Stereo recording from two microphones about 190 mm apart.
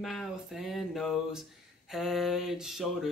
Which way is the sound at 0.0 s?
Centre (ahead or behind).